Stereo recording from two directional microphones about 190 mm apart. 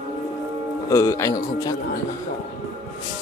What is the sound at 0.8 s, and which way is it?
Speech, 20° left (ahead or behind).